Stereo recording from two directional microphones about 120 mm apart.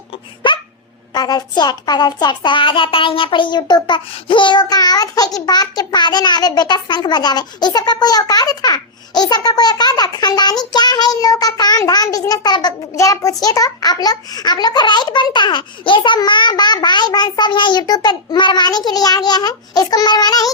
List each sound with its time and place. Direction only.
0.4 s dog: 40° left (ahead or behind)
1.1 s a child's voice: 35° left (ahead or behind)